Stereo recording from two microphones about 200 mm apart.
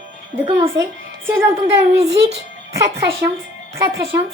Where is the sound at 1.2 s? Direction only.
10° right (ahead or behind).